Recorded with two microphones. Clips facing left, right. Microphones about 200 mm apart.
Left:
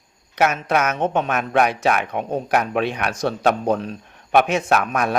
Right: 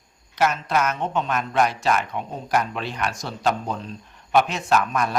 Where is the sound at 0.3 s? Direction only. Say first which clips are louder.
Left 3 dB; 60° left (ahead or behind).